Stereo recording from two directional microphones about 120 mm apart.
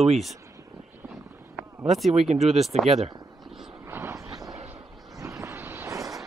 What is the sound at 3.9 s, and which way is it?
Vehicle, 25° right (ahead or behind).